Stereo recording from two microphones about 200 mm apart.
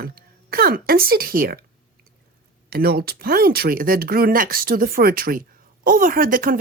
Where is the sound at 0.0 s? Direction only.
50° right (ahead or behind).